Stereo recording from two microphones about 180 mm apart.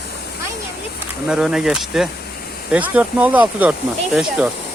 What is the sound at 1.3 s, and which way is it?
Speech, 5° right (ahead or behind).